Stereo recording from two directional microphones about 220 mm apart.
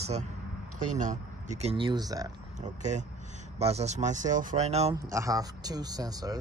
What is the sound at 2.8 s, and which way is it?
Speech, 30° right (ahead or behind).